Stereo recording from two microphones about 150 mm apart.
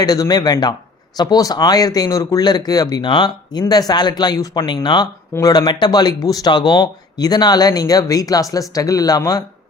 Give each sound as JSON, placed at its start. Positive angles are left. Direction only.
{"t": 0.0, "sound": "speech", "side_deg": 25}